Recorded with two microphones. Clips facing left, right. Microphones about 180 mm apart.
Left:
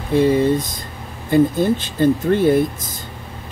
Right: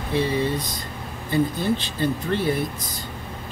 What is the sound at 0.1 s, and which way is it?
Speech, 45° left (ahead or behind).